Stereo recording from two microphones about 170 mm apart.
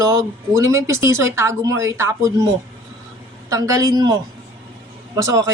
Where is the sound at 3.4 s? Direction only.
20° right (ahead or behind).